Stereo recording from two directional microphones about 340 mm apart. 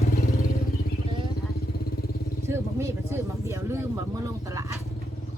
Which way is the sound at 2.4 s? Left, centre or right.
Centre.